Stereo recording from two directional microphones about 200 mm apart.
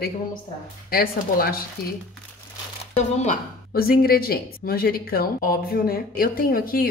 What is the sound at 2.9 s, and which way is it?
Speech, 35° left (ahead or behind).